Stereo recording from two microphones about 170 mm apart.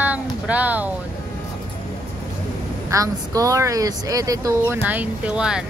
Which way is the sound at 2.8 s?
20° right (ahead or behind).